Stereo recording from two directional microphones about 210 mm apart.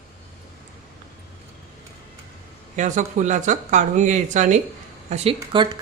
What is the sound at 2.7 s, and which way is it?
Speech, 35° right (ahead or behind).